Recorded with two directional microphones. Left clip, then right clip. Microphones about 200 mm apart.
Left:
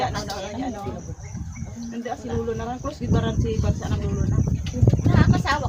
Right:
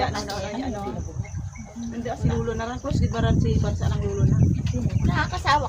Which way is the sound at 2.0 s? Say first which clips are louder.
Even; 20° left (ahead or behind).